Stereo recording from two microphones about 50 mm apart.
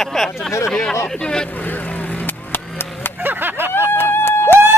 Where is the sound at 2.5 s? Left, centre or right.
Left.